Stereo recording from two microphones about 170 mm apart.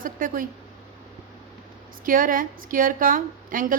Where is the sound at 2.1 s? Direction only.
55° right (ahead or behind).